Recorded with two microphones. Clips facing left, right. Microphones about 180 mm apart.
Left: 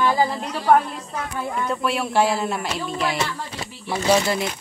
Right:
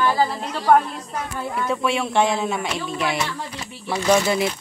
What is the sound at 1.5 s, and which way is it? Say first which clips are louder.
Speech: right 2 dB; centre (ahead or behind).